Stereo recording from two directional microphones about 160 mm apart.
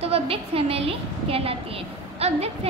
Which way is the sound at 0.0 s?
40° right (ahead or behind).